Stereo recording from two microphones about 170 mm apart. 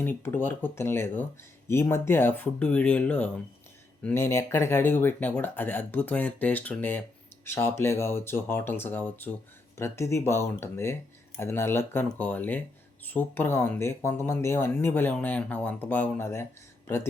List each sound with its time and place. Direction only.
0.0 s speech: 10° left (ahead or behind)